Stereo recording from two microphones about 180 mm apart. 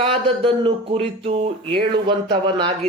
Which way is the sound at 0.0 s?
30° right (ahead or behind).